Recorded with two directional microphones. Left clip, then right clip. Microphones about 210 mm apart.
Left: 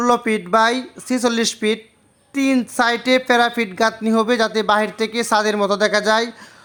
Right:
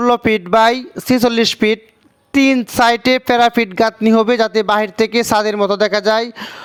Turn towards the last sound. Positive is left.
turn(degrees=-40)  # may be behind; listen again after turning